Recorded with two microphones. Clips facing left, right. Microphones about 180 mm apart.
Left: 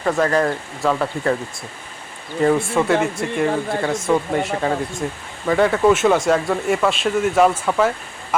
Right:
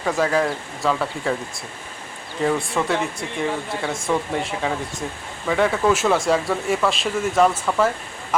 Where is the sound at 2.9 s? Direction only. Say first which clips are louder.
Left 5 dB; 60° left (ahead or behind).